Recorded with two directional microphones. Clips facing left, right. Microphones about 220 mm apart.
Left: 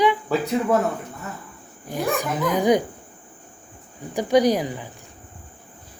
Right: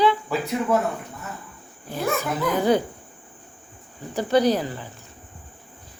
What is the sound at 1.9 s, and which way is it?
Speech, 15° left (ahead or behind).